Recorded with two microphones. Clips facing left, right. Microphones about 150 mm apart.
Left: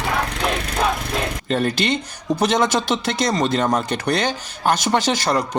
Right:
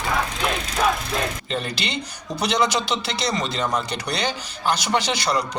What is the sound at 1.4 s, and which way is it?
Speech, 50° left (ahead or behind).